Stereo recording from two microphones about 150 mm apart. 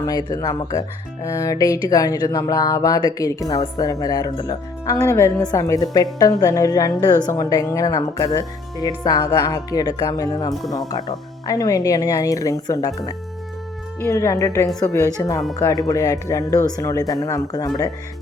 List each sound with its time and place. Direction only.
0.0 s a woman's voice: 25° left (ahead or behind)
14.0 s a woman's voice: 20° left (ahead or behind)